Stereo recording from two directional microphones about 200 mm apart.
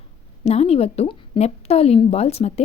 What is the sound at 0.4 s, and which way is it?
A woman's voice, 30° left (ahead or behind).